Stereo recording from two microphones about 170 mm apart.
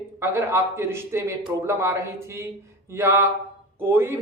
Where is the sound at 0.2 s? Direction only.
15° right (ahead or behind).